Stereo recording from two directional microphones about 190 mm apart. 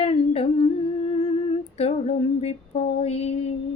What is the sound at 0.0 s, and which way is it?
Humming, 30° left (ahead or behind).